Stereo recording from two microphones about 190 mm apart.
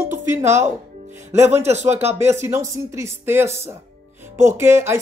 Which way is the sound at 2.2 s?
15° right (ahead or behind).